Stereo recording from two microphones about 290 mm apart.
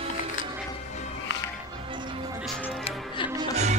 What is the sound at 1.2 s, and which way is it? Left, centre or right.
Music, left.